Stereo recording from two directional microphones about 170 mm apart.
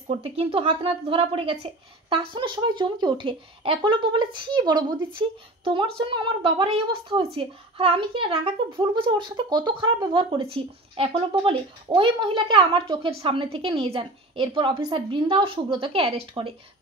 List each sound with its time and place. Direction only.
0.1 s a woman's voice: 35° right (ahead or behind)